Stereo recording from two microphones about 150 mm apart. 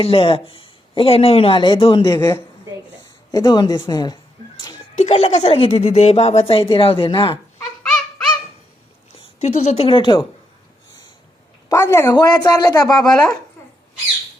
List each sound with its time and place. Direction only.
0.0 s speech: 40° left (ahead or behind)
3.3 s a sound: 30° left (ahead or behind)
4.9 s speech: 45° left (ahead or behind)
9.4 s speech: 50° left (ahead or behind); by 10.2 s 35° left (ahead or behind)
11.7 s speech: 20° left (ahead or behind)